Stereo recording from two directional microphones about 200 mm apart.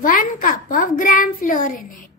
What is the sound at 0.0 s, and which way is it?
A child's voice, 40° left (ahead or behind).